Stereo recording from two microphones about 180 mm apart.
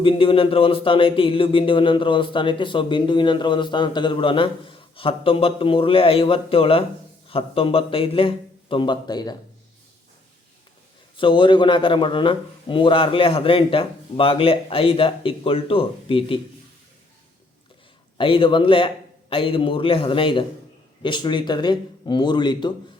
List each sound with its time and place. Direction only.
0.0 s a man's voice: 30° left (ahead or behind)
11.2 s speech: 30° left (ahead or behind)
18.2 s speech: 30° left (ahead or behind)